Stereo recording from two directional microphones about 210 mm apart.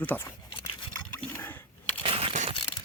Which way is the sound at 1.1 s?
10° left (ahead or behind).